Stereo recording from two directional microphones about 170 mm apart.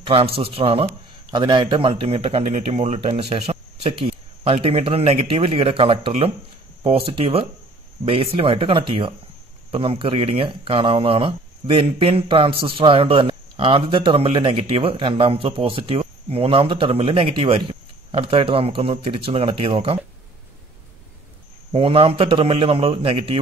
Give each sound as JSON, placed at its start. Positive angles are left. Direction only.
{"t": 0.0, "sound": "speech", "side_deg": -35}
{"t": 21.7, "sound": "speech", "side_deg": -30}